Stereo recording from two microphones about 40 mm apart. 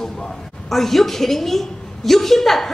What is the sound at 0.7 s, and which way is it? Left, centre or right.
A woman's voice, centre.